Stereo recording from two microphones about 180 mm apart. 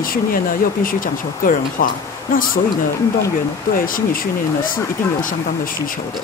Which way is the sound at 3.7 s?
50° left (ahead or behind).